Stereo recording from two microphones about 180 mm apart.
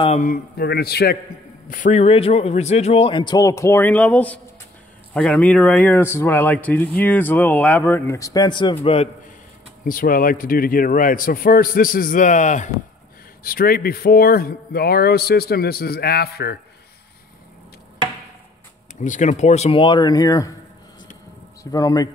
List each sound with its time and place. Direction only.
0.2 s a man's voice: 55° left (ahead or behind)
1.7 s a man's voice: 45° left (ahead or behind)
9.8 s a man's voice: 50° left (ahead or behind)
13.4 s a man's voice: 55° left (ahead or behind)
18.9 s speech: 45° left (ahead or behind); by 20.5 s 20° left (ahead or behind)
21.7 s speech: 20° left (ahead or behind)